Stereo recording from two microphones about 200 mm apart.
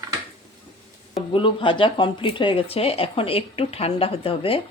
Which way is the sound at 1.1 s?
25° left (ahead or behind).